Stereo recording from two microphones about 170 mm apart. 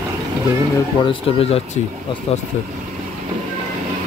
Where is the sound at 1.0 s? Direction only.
35° left (ahead or behind).